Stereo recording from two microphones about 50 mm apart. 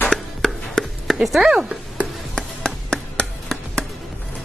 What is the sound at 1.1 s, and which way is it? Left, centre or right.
Speech, centre.